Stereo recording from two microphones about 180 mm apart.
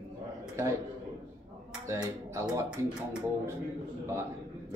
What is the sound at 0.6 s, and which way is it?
Speech, 15° right (ahead or behind).